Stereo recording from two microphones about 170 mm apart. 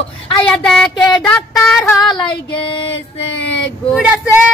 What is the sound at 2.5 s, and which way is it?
Female singing, 30° left (ahead or behind).